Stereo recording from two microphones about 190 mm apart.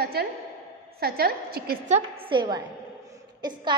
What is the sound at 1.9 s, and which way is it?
A woman's voice, 25° right (ahead or behind).